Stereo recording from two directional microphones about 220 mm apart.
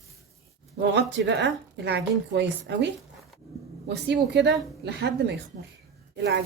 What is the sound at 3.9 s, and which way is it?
A woman's voice, 50° right (ahead or behind).